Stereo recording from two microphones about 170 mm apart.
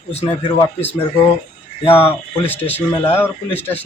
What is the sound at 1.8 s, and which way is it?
Speech, 35° left (ahead or behind).